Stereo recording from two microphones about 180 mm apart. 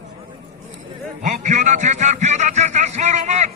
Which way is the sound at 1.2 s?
45° right (ahead or behind).